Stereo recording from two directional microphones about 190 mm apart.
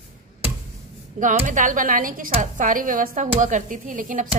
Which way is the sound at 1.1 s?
40° right (ahead or behind).